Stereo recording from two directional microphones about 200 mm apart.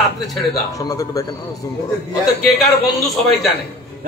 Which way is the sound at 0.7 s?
15° left (ahead or behind).